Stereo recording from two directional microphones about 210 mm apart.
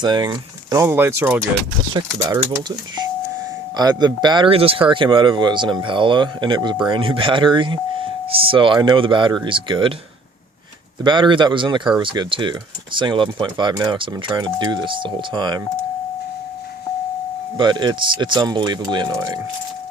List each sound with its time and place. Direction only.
0.0 s speech: 20° right (ahead or behind)
11.0 s speech: 20° right (ahead or behind)
17.6 s speech: 20° right (ahead or behind)